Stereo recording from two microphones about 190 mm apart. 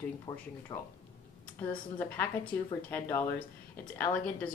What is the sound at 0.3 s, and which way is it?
Speech, 15° left (ahead or behind).